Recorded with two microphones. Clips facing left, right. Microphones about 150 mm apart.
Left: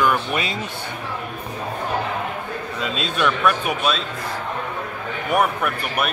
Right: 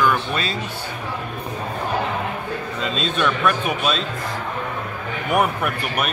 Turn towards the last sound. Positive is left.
turn(degrees=-5)  # may be behind; listen again after turning